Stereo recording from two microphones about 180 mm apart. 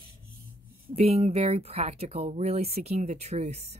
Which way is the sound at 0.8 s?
35° right (ahead or behind).